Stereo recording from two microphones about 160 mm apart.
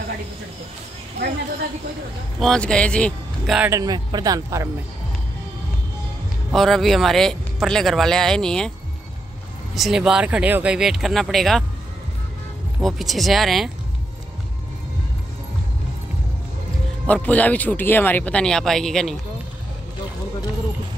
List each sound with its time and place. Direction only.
2.4 s speech: 5° left (ahead or behind)
3.5 s speech: 10° right (ahead or behind)
3.8 s speech: 25° right (ahead or behind)
6.5 s speech: centre (ahead or behind)
9.8 s speech: 5° right (ahead or behind)
12.8 s speech: centre (ahead or behind)
17.0 s speech: 10° left (ahead or behind)